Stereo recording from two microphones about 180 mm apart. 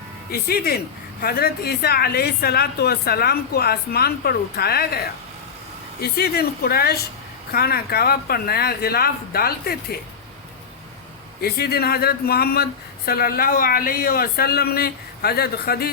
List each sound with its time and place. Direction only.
0.3 s a woman's voice: 55° left (ahead or behind)
11.3 s a woman's voice: 60° left (ahead or behind)